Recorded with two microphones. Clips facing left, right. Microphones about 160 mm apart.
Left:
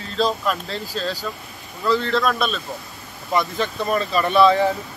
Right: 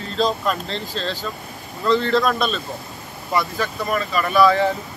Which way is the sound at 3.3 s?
20° left (ahead or behind).